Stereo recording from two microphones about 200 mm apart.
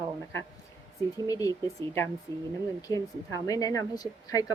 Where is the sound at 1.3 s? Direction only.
15° left (ahead or behind).